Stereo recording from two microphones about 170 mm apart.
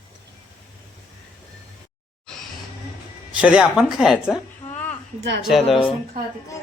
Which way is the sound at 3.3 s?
5° right (ahead or behind).